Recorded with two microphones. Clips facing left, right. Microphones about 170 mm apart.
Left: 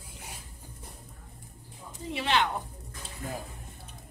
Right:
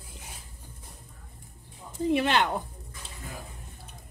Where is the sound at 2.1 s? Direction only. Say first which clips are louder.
Right 4 dB; 55° right (ahead or behind).